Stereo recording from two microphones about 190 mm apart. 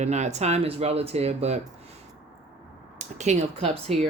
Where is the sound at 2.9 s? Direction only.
40° right (ahead or behind).